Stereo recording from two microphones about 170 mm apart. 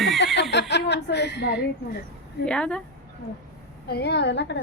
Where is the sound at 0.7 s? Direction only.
90° left.